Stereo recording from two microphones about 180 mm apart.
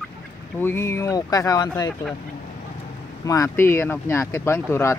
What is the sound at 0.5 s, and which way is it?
Speech, 15° left (ahead or behind).